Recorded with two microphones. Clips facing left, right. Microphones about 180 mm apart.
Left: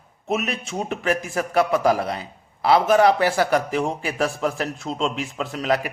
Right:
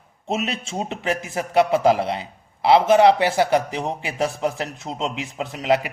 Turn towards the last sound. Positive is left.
turn(degrees=-20)  # may be behind; listen again after turning